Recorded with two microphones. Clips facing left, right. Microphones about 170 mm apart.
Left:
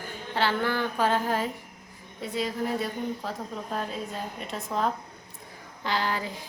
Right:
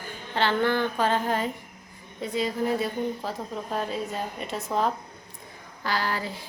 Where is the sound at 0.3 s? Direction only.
5° left (ahead or behind).